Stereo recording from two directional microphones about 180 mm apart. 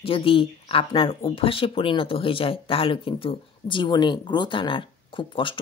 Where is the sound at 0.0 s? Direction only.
30° left (ahead or behind).